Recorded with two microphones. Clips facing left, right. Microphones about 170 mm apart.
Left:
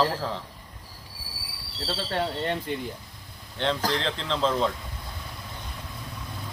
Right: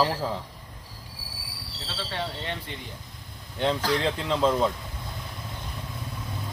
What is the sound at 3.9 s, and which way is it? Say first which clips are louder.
Speech: right 3 dB; 10° right (ahead or behind).